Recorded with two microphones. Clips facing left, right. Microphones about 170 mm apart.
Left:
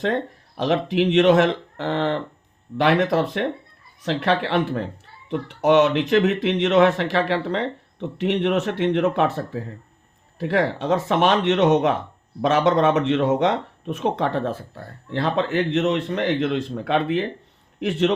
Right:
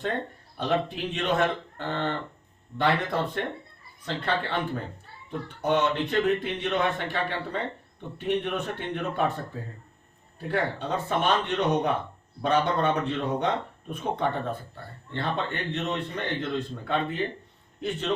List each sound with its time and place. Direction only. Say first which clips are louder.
0.0 s speech: left 7 dB; 90° left